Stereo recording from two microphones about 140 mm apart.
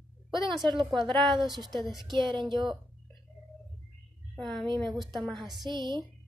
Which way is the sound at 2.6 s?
Centre (ahead or behind).